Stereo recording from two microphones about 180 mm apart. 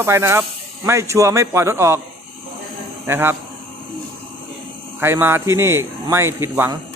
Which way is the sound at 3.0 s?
10° right (ahead or behind).